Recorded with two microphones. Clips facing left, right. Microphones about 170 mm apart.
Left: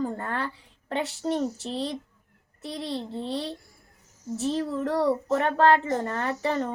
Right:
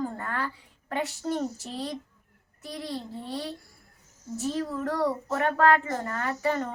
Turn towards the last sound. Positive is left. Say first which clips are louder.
# left 1 dB
turn(degrees=30)  # may be behind; listen again after turning